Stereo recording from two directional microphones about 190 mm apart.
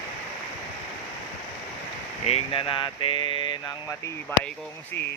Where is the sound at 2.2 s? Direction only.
30° left (ahead or behind); by 4.5 s 10° left (ahead or behind).